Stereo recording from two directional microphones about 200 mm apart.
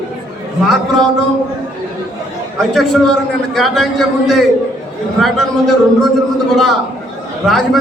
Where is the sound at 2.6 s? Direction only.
Centre (ahead or behind).